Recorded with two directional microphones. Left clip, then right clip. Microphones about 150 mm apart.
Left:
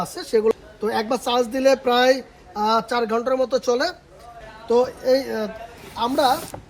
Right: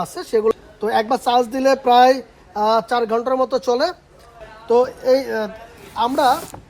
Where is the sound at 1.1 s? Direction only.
90° right.